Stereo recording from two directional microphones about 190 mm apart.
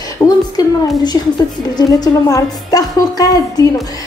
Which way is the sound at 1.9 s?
20° left (ahead or behind).